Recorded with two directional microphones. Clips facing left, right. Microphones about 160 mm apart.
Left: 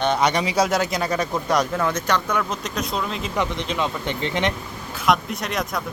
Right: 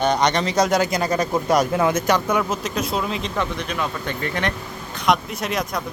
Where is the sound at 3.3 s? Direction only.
20° left (ahead or behind).